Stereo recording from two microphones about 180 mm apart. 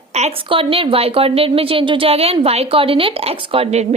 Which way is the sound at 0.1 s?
35° right (ahead or behind).